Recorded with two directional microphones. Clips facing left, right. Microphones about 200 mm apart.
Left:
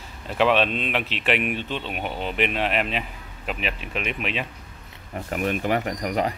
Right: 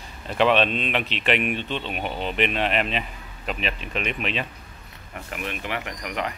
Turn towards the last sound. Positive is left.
turn(degrees=40)  # may be behind; listen again after turning